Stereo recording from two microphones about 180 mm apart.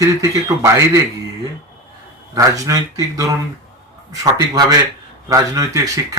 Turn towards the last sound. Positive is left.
turn(degrees=-20)  # may be behind; listen again after turning